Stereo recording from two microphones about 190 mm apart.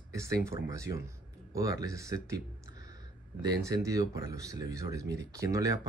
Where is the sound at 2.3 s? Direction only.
15° right (ahead or behind).